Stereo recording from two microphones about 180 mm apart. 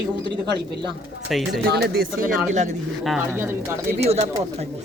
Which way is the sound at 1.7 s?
65° right (ahead or behind).